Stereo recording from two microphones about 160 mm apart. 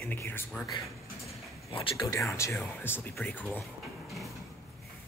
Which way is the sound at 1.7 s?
35° left (ahead or behind).